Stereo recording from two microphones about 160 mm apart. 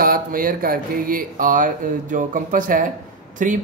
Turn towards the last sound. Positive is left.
turn(degrees=-55)  # may be behind; listen again after turning